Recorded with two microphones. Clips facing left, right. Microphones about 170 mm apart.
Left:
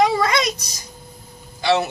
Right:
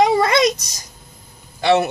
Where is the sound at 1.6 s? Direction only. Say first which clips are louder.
Right 3 dB; 50° right (ahead or behind).